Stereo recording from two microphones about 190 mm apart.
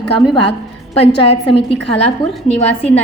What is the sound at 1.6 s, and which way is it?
Speech, 30° left (ahead or behind).